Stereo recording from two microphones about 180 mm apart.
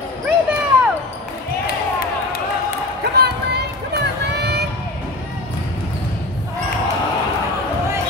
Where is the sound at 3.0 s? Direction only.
65° right (ahead or behind).